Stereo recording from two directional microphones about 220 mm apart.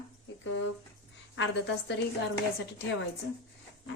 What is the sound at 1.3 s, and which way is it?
Speech, 55° left (ahead or behind).